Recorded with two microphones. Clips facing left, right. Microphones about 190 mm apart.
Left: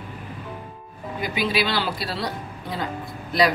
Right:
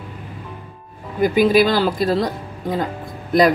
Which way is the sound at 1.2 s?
45° right (ahead or behind).